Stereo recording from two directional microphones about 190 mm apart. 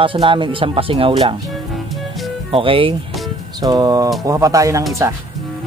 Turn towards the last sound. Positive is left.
turn(degrees=-15)  # may be behind; listen again after turning